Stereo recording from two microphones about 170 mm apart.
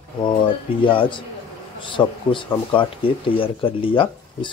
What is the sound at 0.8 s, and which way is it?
Speech, 30° left (ahead or behind).